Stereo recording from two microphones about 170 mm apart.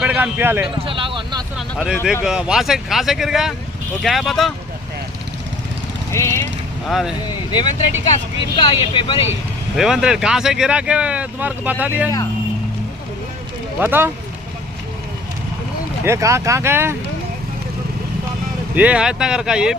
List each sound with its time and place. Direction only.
0.0 s speech: 10° right (ahead or behind)
0.8 s a sound: 30° right (ahead or behind)
1.5 s a sound: 5° right (ahead or behind)
2.2 s speech: 5° right (ahead or behind)
6.1 s speech: 15° left (ahead or behind)
6.8 s speech: centre (ahead or behind)
7.5 s speech: 25° left (ahead or behind)
9.7 s speech: 5° right (ahead or behind)
13.7 s speech: 10° right (ahead or behind)
16.0 s speech: 15° right (ahead or behind)
18.7 s speech: 10° right (ahead or behind)